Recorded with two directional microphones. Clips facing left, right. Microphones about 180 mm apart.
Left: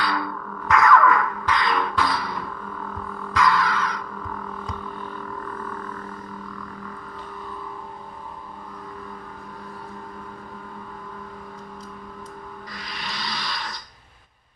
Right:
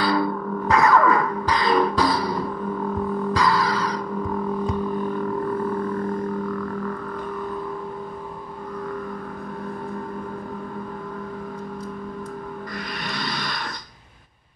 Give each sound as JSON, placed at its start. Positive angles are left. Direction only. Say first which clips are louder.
{"t": 0.0, "sound": "music", "louder": "right 6 dB", "side_deg": -35}
{"t": 12.9, "sound": "music", "louder": "right 2 dB", "side_deg": -55}